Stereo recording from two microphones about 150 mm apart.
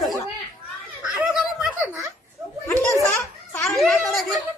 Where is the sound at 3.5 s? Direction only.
Centre (ahead or behind).